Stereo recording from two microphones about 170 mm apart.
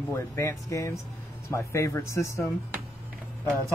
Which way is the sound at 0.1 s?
15° left (ahead or behind).